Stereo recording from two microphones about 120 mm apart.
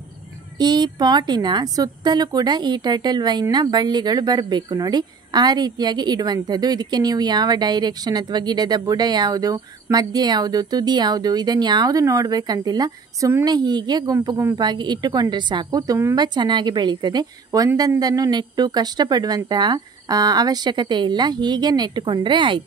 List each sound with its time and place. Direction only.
0.6 s a woman's voice: 35° right (ahead or behind)
16.2 s a woman's voice: 40° right (ahead or behind)